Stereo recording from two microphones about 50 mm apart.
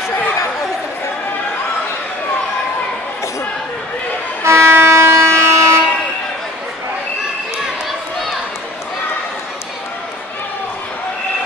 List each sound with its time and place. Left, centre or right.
4.5 s vehicle: right